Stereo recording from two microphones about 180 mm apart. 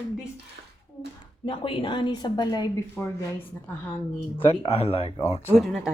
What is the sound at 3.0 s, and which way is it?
Speech, 15° left (ahead or behind).